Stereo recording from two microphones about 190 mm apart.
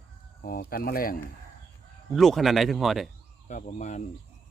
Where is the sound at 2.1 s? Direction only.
Centre (ahead or behind).